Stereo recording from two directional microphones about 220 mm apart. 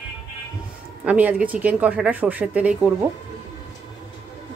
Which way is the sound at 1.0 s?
5° right (ahead or behind).